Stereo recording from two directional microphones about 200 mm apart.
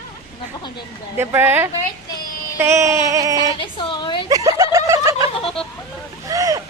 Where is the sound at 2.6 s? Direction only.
15° right (ahead or behind).